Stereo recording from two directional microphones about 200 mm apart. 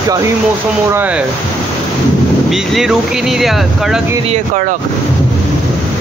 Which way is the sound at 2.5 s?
Centre (ahead or behind).